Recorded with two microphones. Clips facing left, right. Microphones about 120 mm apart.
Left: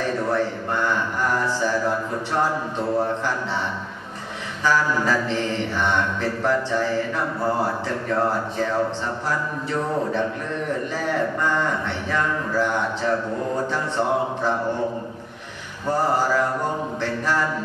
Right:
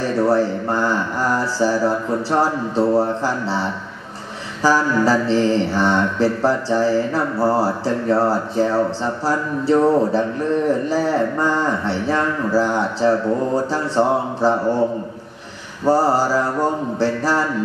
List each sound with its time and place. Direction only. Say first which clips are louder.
0.0 s mantra: right 6 dB; 35° right (ahead or behind)
4.6 s mantra: right 5 dB; 30° right (ahead or behind)
15.8 s mantra: right 5 dB; 35° right (ahead or behind)